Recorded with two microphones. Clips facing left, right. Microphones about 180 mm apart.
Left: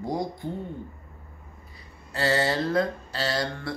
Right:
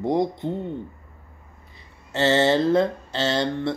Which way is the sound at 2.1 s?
25° right (ahead or behind).